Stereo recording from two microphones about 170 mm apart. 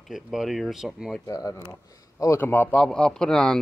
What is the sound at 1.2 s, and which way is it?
A man's voice, 20° left (ahead or behind).